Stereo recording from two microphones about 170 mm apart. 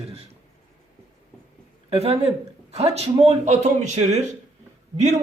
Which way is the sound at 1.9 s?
35° right (ahead or behind).